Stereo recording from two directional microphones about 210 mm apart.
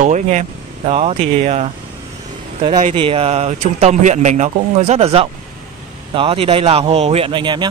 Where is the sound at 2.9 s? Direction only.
25° right (ahead or behind).